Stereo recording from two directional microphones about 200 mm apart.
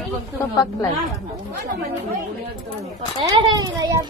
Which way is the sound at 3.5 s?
20° right (ahead or behind).